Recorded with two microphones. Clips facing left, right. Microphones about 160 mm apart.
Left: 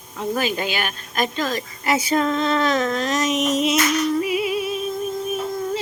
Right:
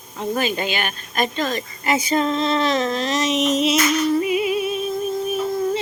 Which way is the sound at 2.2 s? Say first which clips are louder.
Even; 30° right (ahead or behind).